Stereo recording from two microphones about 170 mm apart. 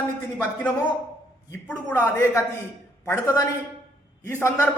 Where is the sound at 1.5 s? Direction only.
10° left (ahead or behind).